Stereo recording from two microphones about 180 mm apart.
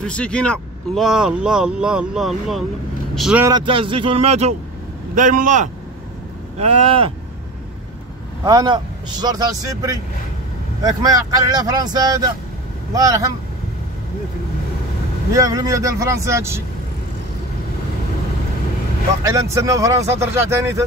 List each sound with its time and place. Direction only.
0.0 s speech: 5° left (ahead or behind)
3.4 s a man's voice: 25° right (ahead or behind); by 5.7 s 45° right (ahead or behind)
6.6 s speech: 35° right (ahead or behind)
8.5 s speech: 25° right (ahead or behind)
15.3 s speech: 20° right (ahead or behind)
19.2 s speech: 15° right (ahead or behind)